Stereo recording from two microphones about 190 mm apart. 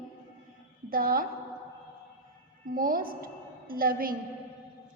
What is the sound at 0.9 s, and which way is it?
Speech, 50° right (ahead or behind).